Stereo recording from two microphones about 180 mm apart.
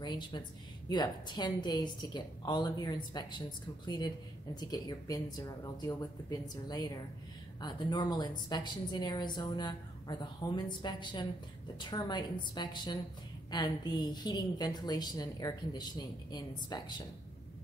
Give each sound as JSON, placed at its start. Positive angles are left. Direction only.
{"t": 0.0, "sound": "a woman's voice", "side_deg": 25}